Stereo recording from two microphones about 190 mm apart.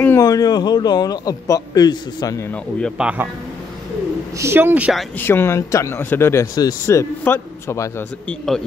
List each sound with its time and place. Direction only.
0.0 s a man's voice: 15° left (ahead or behind)
3.0 s a man's voice: 5° right (ahead or behind)
4.4 s a man's voice: 10° right (ahead or behind)
5.2 s speech: 10° left (ahead or behind)